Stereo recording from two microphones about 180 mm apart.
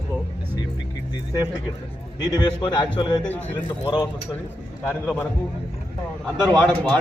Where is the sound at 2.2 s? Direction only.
25° left (ahead or behind).